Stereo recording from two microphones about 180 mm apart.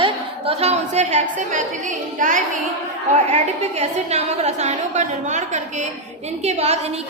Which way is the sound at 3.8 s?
35° right (ahead or behind).